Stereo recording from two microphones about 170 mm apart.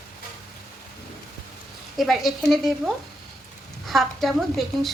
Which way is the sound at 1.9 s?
Centre (ahead or behind).